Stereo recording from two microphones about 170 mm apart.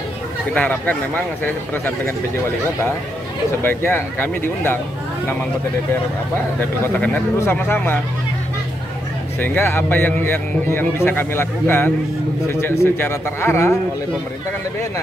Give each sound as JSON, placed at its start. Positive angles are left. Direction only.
{"t": 0.6, "sound": "a man's voice", "side_deg": 10}
{"t": 6.9, "sound": "a man's voice", "side_deg": 10}
{"t": 9.4, "sound": "a man's voice", "side_deg": 10}